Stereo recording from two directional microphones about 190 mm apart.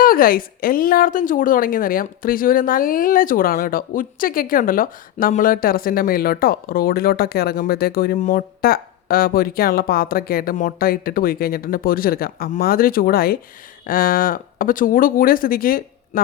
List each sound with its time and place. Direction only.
0.0 s a woman's voice: 50° left (ahead or behind)